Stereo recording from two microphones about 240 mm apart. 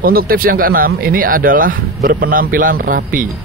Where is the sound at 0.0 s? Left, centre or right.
Right.